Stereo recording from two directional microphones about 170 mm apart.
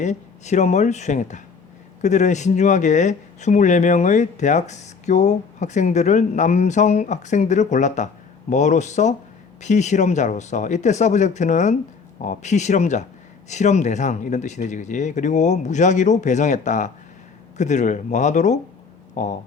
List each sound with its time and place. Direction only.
0.0 s speech: 45° left (ahead or behind)